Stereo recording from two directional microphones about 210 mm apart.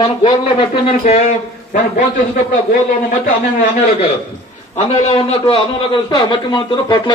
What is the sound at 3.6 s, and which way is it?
A man's voice, 35° left (ahead or behind).